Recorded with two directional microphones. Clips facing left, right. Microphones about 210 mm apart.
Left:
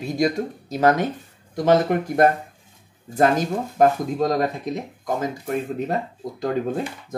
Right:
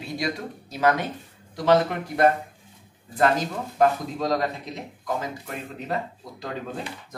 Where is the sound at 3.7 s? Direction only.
50° left (ahead or behind).